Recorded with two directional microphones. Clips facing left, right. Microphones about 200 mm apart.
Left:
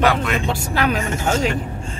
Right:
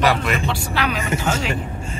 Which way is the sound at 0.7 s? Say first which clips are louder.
Left 4 dB; 45° left (ahead or behind).